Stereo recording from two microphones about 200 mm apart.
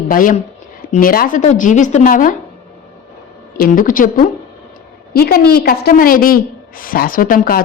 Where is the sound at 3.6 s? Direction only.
45° left (ahead or behind).